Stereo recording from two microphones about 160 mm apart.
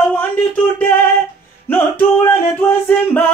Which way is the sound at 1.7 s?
15° left (ahead or behind).